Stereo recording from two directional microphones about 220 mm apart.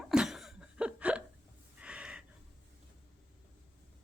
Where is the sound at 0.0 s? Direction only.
Centre (ahead or behind).